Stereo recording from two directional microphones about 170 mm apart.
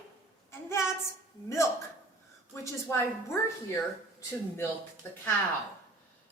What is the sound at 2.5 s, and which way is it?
Speech, 15° left (ahead or behind).